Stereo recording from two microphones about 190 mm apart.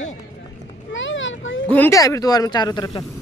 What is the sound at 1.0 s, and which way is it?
Speech, 85° left.